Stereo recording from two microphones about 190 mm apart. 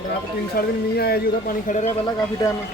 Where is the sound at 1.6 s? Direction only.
40° left (ahead or behind).